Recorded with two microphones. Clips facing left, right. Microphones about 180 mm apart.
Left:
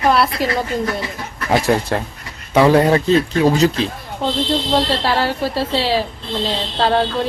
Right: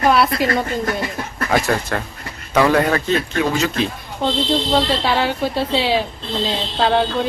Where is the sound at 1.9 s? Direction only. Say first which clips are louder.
Left 3 dB; 25° left (ahead or behind).